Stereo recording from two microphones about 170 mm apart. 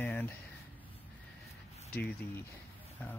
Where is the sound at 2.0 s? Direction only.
10° left (ahead or behind).